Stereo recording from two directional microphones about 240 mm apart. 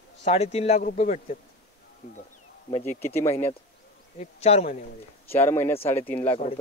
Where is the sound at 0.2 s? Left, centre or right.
Left.